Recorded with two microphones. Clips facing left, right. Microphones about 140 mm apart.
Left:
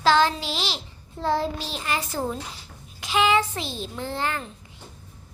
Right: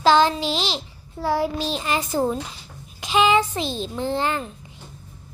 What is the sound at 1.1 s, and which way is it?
A child's voice, 10° right (ahead or behind).